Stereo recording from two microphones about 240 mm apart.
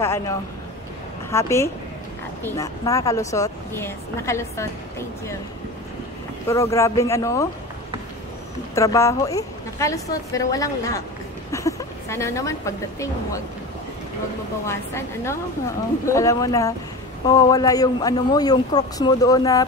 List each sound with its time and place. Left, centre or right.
0.0 s a man's voice: centre
6.5 s a man's voice: centre
8.7 s a man's voice: centre
14.7 s a man's voice: centre